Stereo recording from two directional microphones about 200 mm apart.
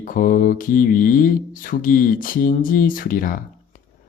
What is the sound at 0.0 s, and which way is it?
Speech, 45° left (ahead or behind).